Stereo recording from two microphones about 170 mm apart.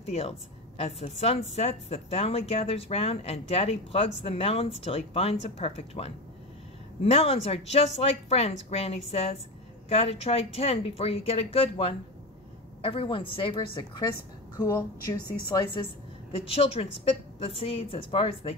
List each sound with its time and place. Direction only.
0.0 s a woman's voice: 35° left (ahead or behind)
14.6 s a woman's voice: 15° left (ahead or behind)
16.3 s speech: 35° left (ahead or behind)